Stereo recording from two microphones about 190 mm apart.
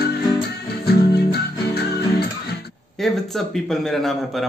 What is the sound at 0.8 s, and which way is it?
Guitar, 55° left (ahead or behind).